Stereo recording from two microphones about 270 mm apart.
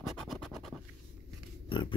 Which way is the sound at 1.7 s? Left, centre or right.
Centre.